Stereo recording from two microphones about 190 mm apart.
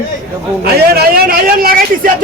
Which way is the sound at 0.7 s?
55° right (ahead or behind).